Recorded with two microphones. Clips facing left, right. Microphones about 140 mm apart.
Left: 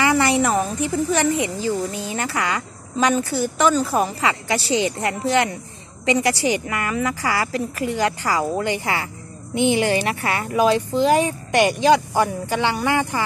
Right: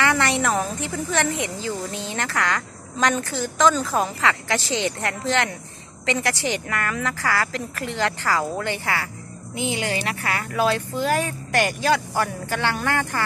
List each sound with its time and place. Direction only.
0.0 s speech: 10° left (ahead or behind)
9.6 s speech: 30° left (ahead or behind)
11.1 s speech: 15° left (ahead or behind)